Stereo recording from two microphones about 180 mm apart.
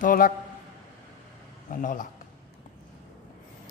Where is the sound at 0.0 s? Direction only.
50° left (ahead or behind).